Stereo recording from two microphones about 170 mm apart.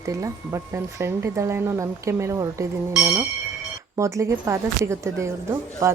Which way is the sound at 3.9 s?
15° right (ahead or behind).